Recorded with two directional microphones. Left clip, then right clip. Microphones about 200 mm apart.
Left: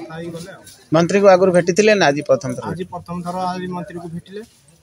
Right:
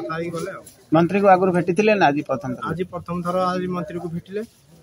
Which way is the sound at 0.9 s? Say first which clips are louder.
Left 3 dB; 40° left (ahead or behind).